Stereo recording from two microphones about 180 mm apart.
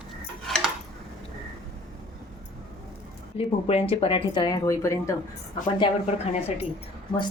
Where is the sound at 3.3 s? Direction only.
30° left (ahead or behind); by 5.1 s 15° left (ahead or behind).